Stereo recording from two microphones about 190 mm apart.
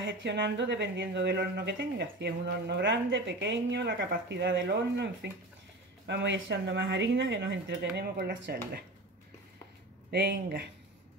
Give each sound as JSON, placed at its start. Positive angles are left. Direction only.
{"t": 0.0, "sound": "speech", "side_deg": -70}
{"t": 10.1, "sound": "speech", "side_deg": -60}